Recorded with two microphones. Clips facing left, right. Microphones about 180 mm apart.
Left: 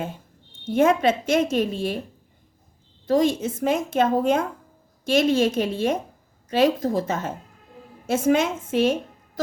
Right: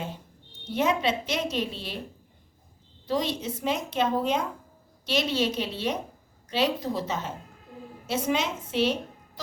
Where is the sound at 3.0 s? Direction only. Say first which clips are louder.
Left 8 dB; 45° left (ahead or behind).